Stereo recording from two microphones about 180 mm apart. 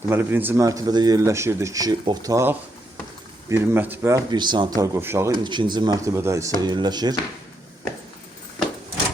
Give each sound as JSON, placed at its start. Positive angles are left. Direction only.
{"t": 0.1, "sound": "speech", "side_deg": -10}
{"t": 4.3, "sound": "speech", "side_deg": -25}
{"t": 5.4, "sound": "speech", "side_deg": -25}